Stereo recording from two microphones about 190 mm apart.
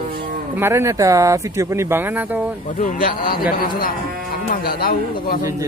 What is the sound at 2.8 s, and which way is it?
Speech, 45° left (ahead or behind).